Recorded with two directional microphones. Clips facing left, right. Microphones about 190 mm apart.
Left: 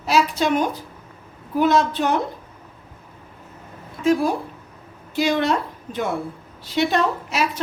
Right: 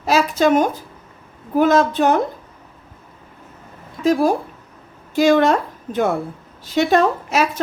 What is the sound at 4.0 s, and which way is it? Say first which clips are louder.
A woman's voice: right 3 dB; 40° right (ahead or behind).